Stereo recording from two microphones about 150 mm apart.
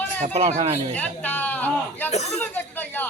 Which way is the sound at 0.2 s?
45° right (ahead or behind).